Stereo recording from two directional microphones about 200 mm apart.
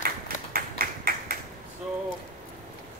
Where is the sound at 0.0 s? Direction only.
45° right (ahead or behind).